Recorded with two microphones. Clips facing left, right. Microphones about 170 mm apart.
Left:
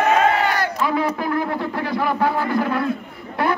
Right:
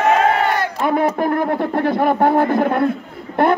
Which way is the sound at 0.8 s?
50° right (ahead or behind).